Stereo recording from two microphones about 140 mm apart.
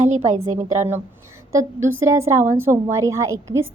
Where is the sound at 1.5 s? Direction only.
20° right (ahead or behind).